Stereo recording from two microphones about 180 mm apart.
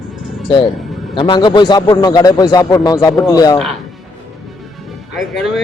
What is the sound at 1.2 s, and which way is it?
A man's voice, 25° left (ahead or behind).